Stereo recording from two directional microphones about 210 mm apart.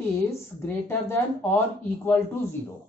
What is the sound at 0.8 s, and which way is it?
Speech, 10° left (ahead or behind).